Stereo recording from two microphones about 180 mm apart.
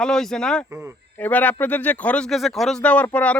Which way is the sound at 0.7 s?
15° right (ahead or behind).